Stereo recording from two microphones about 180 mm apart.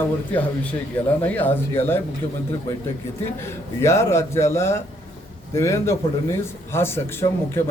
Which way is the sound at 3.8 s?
15° left (ahead or behind).